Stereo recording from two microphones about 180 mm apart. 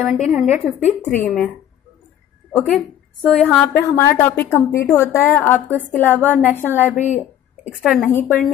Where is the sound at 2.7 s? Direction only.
5° left (ahead or behind).